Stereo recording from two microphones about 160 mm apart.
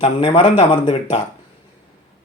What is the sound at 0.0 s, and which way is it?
Speech, 35° left (ahead or behind).